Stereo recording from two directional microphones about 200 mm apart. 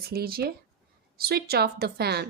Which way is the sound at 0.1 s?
50° right (ahead or behind).